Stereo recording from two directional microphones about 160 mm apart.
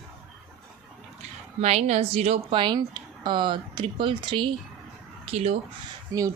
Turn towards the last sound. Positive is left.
turn(degrees=-20)  # may be behind; listen again after turning